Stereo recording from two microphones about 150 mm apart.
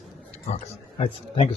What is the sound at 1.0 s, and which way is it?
Speech, 40° left (ahead or behind).